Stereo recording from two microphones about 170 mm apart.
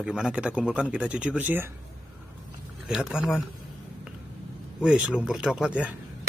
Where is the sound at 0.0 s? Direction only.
5° right (ahead or behind).